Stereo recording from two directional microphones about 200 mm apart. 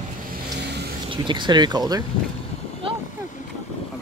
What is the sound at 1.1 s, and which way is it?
Speech, 25° right (ahead or behind).